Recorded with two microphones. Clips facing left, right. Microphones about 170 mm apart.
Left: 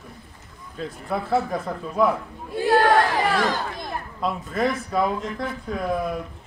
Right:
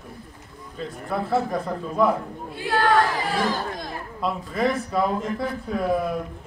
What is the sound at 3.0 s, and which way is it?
Speech, 70° left (ahead or behind).